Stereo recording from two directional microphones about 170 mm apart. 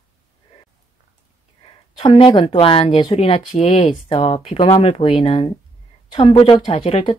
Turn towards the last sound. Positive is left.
turn(degrees=30)  # may be behind; listen again after turning